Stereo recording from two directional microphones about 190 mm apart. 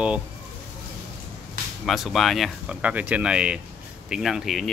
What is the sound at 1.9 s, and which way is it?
Speech, centre (ahead or behind).